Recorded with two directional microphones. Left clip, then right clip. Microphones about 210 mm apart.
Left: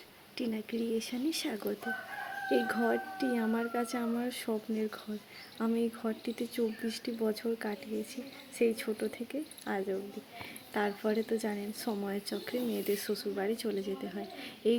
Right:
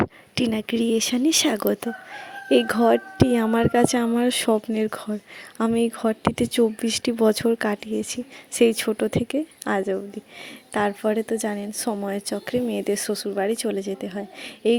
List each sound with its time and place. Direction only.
0.3 s a woman's voice: 50° right (ahead or behind)